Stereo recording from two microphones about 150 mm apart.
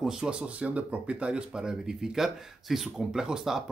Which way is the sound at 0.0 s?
5° right (ahead or behind).